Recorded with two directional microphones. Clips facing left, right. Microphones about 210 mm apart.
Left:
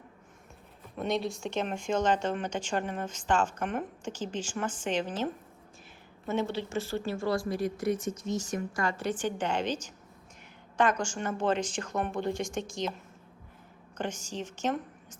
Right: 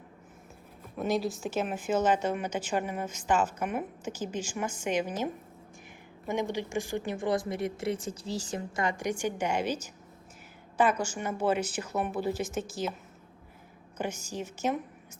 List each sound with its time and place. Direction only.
0.9 s speech: centre (ahead or behind)
14.0 s speech: 10° right (ahead or behind)